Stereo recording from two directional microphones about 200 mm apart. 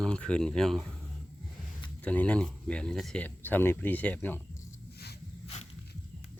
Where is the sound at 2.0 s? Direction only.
5° left (ahead or behind).